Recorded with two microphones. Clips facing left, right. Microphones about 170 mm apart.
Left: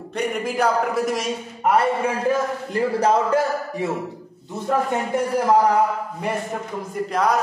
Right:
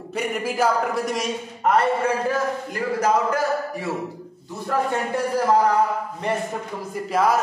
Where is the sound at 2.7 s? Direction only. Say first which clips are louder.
Left 3 dB; 30° left (ahead or behind).